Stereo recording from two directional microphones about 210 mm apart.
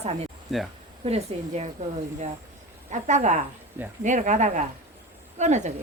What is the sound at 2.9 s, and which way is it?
Speech, 35° right (ahead or behind).